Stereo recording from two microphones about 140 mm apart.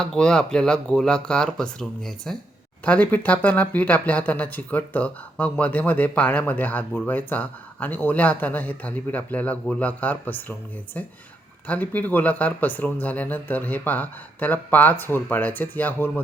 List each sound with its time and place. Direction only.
0.0 s speech: 5° left (ahead or behind)
11.7 s speech: 10° left (ahead or behind)